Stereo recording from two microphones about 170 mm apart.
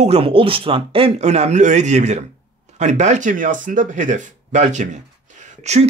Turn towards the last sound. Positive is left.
turn(degrees=-45)  # may be behind; listen again after turning